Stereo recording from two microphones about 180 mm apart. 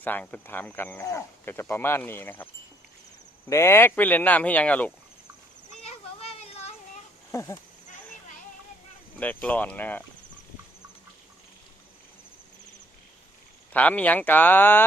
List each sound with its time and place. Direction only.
0.0 s speech: 10° left (ahead or behind)
3.5 s speech: 15° left (ahead or behind)
5.8 s a sound: 35° left (ahead or behind)
7.3 s speech: 15° left (ahead or behind)
9.1 s speech: 10° left (ahead or behind)
13.7 s speech: 10° left (ahead or behind)